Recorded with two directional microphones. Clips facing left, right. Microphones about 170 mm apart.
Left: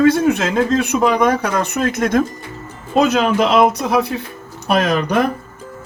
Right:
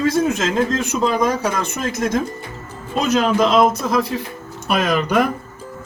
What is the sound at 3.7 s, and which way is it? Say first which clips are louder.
Speech: left 2 dB; 65° left (ahead or behind).